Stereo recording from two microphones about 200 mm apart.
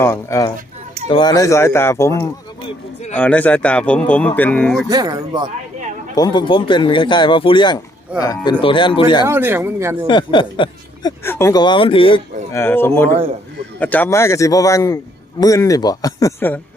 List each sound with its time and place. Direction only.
0.0 s speech: 15° left (ahead or behind)
2.6 s speech: 35° left (ahead or behind)
3.2 s speech: 5° left (ahead or behind)
4.9 s speech: 20° right (ahead or behind)
6.1 s speech: 20° left (ahead or behind)
9.2 s speech: 10° right (ahead or behind)
10.1 s speech: 25° left (ahead or behind)
11.2 s speech: 15° left (ahead or behind)
12.5 s speech: 10° left (ahead or behind)
13.1 s a man's voice: 30° right (ahead or behind)
13.7 s speech: 10° left (ahead or behind)